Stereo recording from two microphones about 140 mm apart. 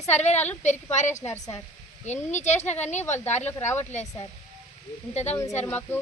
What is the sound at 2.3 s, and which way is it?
Speech, 55° left (ahead or behind).